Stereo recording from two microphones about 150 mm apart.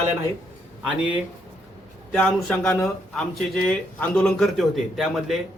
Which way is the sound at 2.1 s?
10° left (ahead or behind).